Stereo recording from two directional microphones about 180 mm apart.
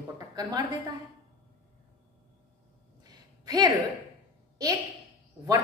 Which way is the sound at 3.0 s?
20° right (ahead or behind).